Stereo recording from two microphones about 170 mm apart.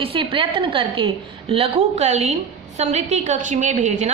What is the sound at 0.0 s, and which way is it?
A woman's voice, 30° right (ahead or behind).